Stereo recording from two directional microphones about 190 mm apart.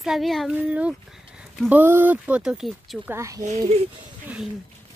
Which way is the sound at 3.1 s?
15° right (ahead or behind).